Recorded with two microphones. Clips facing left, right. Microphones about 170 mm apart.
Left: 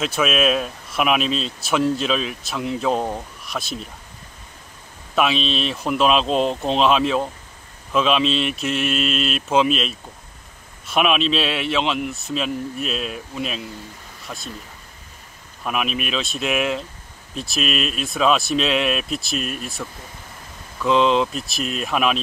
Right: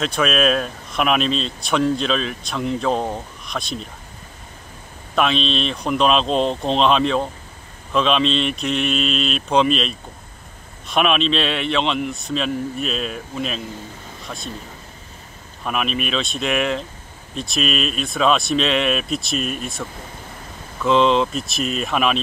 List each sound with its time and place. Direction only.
0.0 s speech: 5° left (ahead or behind)
5.1 s speech: 5° left (ahead or behind)
15.6 s speech: 5° left (ahead or behind)
20.8 s speech: centre (ahead or behind)